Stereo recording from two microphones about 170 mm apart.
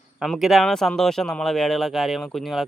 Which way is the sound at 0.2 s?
Centre (ahead or behind).